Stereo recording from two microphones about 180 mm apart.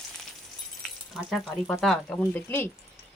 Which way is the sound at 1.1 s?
Centre (ahead or behind).